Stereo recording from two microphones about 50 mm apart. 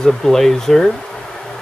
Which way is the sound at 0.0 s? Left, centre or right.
Centre.